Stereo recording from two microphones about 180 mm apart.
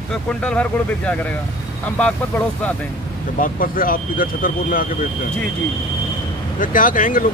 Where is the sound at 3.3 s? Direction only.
50° left (ahead or behind).